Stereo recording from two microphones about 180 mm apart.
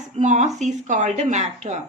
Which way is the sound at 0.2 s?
40° right (ahead or behind).